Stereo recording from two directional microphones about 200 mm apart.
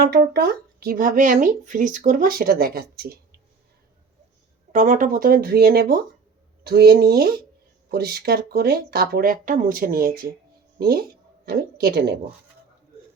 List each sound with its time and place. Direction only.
0.0 s speech: 50° right (ahead or behind)
4.7 s speech: 40° right (ahead or behind)